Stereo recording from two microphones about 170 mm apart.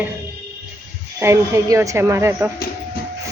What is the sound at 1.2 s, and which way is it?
Speech, 15° right (ahead or behind).